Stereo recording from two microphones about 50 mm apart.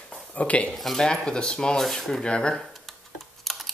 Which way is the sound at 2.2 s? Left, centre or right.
Centre.